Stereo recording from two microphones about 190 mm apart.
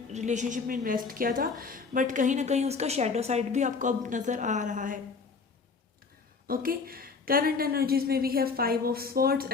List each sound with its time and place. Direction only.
0.1 s a woman's voice: 40° right (ahead or behind)
6.5 s a woman's voice: 50° right (ahead or behind)